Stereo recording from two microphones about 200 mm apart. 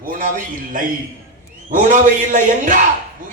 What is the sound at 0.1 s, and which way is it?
A man's voice, 45° right (ahead or behind).